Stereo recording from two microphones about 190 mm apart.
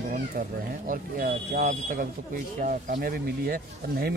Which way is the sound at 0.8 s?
45° right (ahead or behind).